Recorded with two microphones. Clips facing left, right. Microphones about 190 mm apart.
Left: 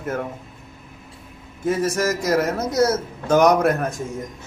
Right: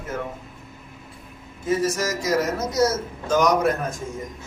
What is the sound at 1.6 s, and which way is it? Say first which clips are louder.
A man's voice: left 2 dB; 55° left (ahead or behind).